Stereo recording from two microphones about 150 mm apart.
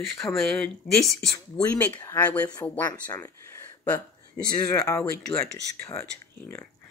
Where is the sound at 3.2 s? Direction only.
15° left (ahead or behind).